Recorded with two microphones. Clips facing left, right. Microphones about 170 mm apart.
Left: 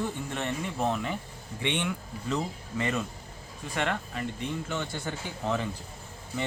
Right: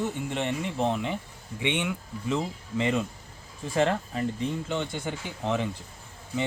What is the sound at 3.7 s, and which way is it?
Speech, 30° right (ahead or behind).